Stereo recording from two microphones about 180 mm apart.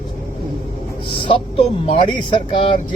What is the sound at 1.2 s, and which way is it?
Speech, 30° left (ahead or behind).